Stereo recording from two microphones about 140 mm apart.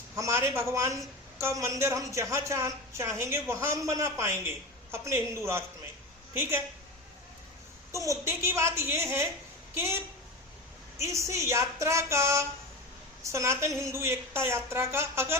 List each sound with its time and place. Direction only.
0.2 s a woman's voice: 20° right (ahead or behind)
7.9 s a woman's voice: 20° right (ahead or behind)